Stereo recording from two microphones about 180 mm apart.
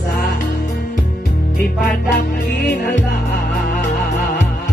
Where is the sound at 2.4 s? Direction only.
55° left (ahead or behind).